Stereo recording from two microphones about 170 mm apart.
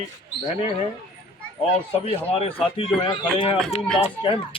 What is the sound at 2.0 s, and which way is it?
Speech, 35° left (ahead or behind).